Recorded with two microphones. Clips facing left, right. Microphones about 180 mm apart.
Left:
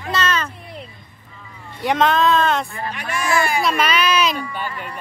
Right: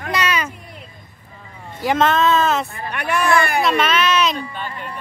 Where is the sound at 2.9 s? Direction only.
65° right (ahead or behind).